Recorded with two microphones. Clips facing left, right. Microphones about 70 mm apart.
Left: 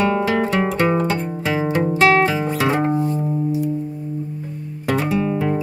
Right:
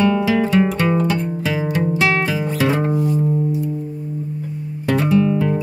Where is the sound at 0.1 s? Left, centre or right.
Centre.